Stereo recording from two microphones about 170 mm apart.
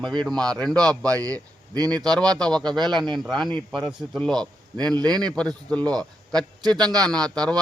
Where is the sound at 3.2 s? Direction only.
Centre (ahead or behind).